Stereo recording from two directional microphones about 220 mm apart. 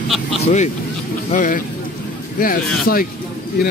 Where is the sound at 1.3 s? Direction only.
35° left (ahead or behind).